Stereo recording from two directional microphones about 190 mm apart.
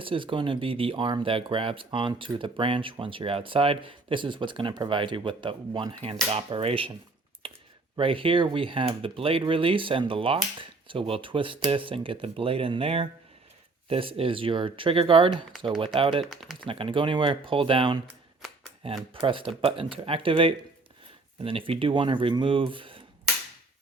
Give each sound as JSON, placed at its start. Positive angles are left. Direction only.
{"t": 0.0, "sound": "speech", "side_deg": -25}
{"t": 7.4, "sound": "a sound", "side_deg": -30}
{"t": 7.9, "sound": "speech", "side_deg": -30}
{"t": 16.2, "sound": "speech", "side_deg": 0}
{"t": 16.6, "sound": "speech", "side_deg": -30}
{"t": 19.1, "sound": "speech", "side_deg": -25}